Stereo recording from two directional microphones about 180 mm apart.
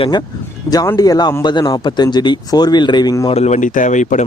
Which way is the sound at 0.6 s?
20° left (ahead or behind).